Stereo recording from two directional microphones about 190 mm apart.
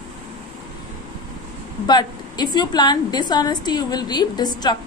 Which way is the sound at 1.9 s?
20° left (ahead or behind).